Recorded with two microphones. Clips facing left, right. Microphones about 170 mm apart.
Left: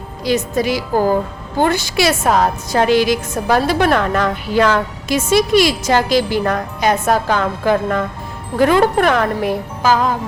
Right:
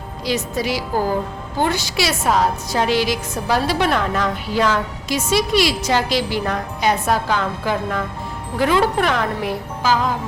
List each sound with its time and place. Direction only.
0.3 s a woman's voice: 50° left (ahead or behind)